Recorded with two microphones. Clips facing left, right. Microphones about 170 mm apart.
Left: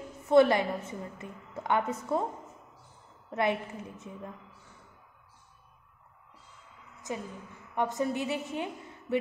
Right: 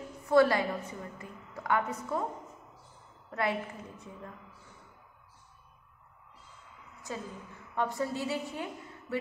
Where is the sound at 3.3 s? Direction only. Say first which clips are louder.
Left 3 dB; 20° left (ahead or behind).